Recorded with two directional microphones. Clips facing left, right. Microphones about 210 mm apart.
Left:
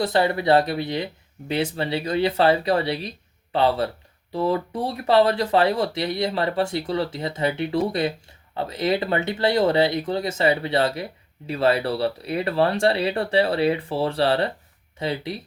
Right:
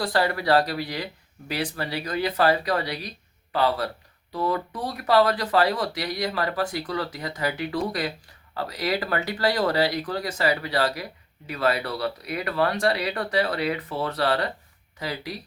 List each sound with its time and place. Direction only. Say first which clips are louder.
0.0 s speech: left 3 dB; 20° left (ahead or behind)